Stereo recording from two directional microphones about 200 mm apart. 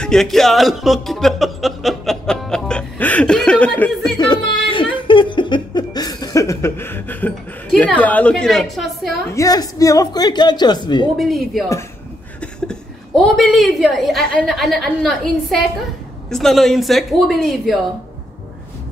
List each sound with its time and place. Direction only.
0.0 s music: centre (ahead or behind)
4.6 s laughter: 25° left (ahead or behind); by 9.1 s centre (ahead or behind)
9.3 s speech: 15° left (ahead or behind)
11.1 s a woman's voice: centre (ahead or behind)